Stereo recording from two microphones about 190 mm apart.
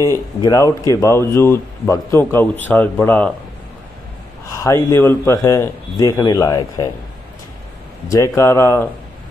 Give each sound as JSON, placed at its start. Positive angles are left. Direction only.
{"t": 0.4, "sound": "speech", "side_deg": 20}
{"t": 4.6, "sound": "speech", "side_deg": 15}
{"t": 8.1, "sound": "speech", "side_deg": 15}